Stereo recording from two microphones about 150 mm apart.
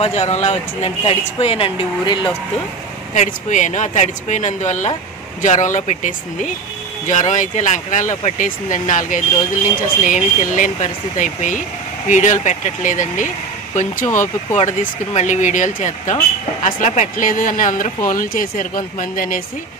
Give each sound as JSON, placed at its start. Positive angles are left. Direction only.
{"t": 0.0, "sound": "speech", "side_deg": 45}
{"t": 3.2, "sound": "speech", "side_deg": 55}
{"t": 14.0, "sound": "speech", "side_deg": 15}
{"t": 14.5, "sound": "speech", "side_deg": 50}